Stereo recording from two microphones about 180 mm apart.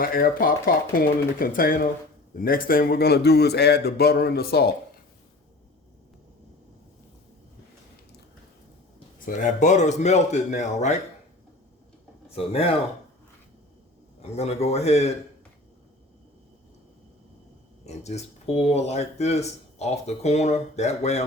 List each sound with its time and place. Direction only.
0.0 s a man's voice: 55° left (ahead or behind)
9.2 s speech: 45° left (ahead or behind)
12.3 s speech: 35° left (ahead or behind)
14.2 s speech: 35° left (ahead or behind)
17.8 s speech: 35° left (ahead or behind)